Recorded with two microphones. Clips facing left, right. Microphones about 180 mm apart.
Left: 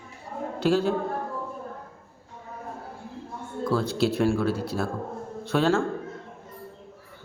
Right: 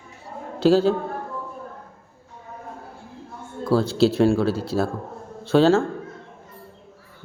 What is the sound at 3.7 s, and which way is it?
A man's voice, 30° right (ahead or behind).